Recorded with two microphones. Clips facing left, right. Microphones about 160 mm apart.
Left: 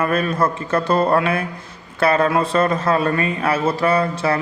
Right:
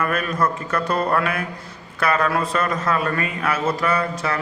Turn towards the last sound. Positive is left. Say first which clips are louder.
# left 4 dB
turn(degrees=30)  # may be behind; listen again after turning